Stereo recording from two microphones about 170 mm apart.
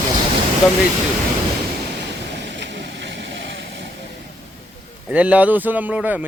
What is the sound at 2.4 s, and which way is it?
Vehicle, 90° right.